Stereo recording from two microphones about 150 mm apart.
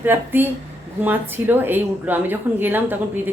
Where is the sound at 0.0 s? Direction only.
15° right (ahead or behind).